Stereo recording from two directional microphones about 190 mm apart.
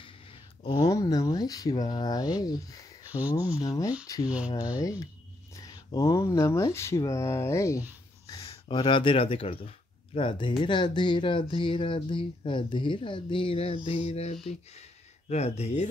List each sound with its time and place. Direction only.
0.0 s speech: 25° left (ahead or behind)
3.1 s speech: 10° right (ahead or behind)
3.5 s speech: 20° left (ahead or behind); by 15.9 s 35° left (ahead or behind)